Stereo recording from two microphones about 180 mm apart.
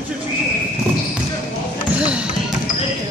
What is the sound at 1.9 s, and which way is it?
Basketball bounce, 5° right (ahead or behind).